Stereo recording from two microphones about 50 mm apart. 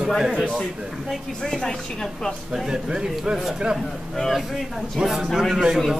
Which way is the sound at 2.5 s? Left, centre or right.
Centre.